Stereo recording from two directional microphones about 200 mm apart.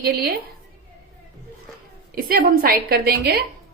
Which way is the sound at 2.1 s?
45° right (ahead or behind).